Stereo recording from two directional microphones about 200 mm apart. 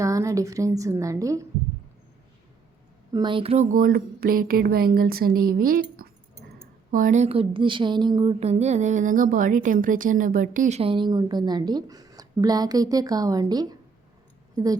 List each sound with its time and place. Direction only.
0.0 s a woman's voice: 15° right (ahead or behind)
3.1 s speech: 20° right (ahead or behind)